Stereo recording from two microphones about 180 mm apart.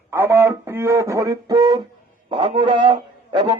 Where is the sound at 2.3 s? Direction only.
30° right (ahead or behind).